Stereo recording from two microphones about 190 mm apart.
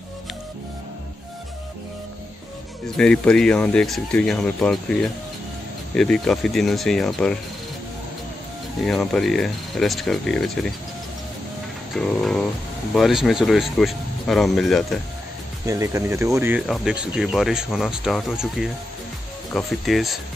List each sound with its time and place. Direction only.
3.0 s speech: 5° left (ahead or behind)
8.8 s speech: 5° left (ahead or behind)
11.9 s music: centre (ahead or behind)
12.9 s speech: centre (ahead or behind)
15.6 s speech: 15° right (ahead or behind); by 20.2 s centre (ahead or behind)